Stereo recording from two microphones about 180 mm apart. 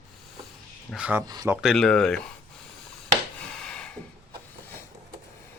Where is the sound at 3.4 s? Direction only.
5° left (ahead or behind).